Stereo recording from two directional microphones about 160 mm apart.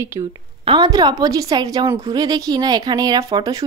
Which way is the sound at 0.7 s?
25° right (ahead or behind).